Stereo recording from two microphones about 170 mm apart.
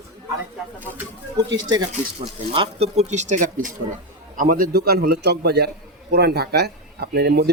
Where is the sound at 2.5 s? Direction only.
35° right (ahead or behind).